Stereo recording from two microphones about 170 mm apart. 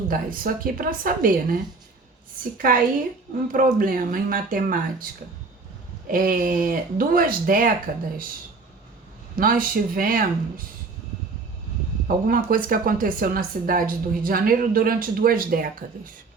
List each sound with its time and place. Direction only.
0.1 s speech: 55° right (ahead or behind)
2.4 s speech: 55° right (ahead or behind)
6.1 s speech: 55° right (ahead or behind)
9.3 s speech: 55° right (ahead or behind)
12.0 s speech: 55° right (ahead or behind)